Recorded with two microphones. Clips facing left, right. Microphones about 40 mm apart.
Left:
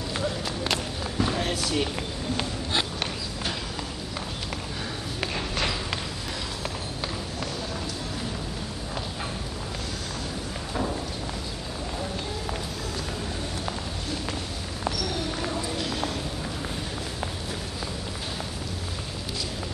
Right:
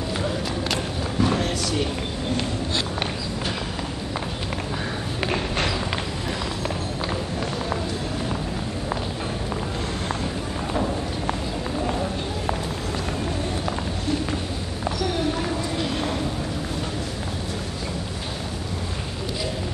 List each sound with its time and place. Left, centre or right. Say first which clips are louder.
1.1 s run: right 5 dB; centre
1.4 s run: right 2 dB; centre
14.9 s a sound: right 5 dB; right